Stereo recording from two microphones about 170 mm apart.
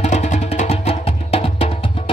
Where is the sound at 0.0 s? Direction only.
40° left (ahead or behind).